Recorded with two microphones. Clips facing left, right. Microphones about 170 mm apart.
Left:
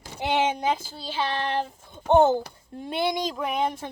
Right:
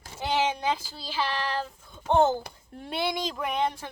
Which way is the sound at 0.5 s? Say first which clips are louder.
Left 3 dB; 20° left (ahead or behind).